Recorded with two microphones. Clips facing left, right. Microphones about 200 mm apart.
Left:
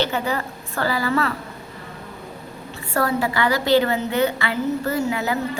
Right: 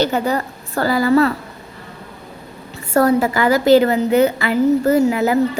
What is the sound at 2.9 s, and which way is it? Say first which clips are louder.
A woman's voice: right 7 dB; 40° right (ahead or behind).